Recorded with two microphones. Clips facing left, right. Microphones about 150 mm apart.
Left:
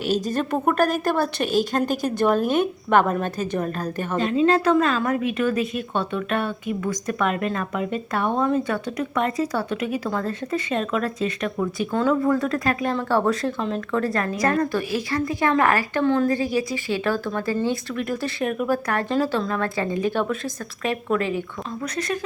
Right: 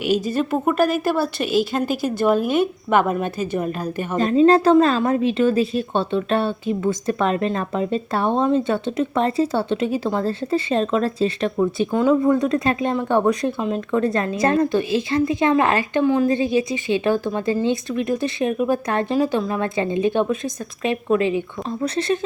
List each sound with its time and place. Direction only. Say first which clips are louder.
0.0 s a woman's voice: right 3 dB; 10° right (ahead or behind)
4.2 s a woman's voice: right 5 dB; 40° right (ahead or behind)
11.9 s a woman's voice: right 2 dB; 15° right (ahead or behind)
16.3 s a woman's voice: right 3 dB; 20° right (ahead or behind)
21.7 s a woman's voice: right 6 dB; 30° right (ahead or behind)